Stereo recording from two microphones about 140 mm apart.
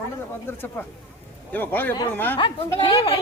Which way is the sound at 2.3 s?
35° left (ahead or behind).